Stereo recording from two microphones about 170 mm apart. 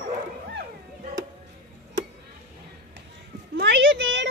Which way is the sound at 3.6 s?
90° right.